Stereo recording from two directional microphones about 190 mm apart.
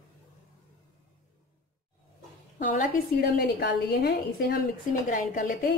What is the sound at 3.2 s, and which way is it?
A woman's voice, 55° left (ahead or behind).